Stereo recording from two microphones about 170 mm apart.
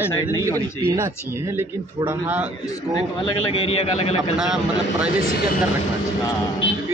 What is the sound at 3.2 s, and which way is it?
A man's voice, 35° left (ahead or behind).